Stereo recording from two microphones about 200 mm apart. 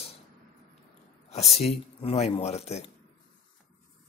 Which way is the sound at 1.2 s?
30° left (ahead or behind).